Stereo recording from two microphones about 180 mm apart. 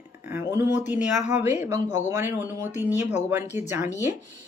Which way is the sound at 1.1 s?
40° left (ahead or behind).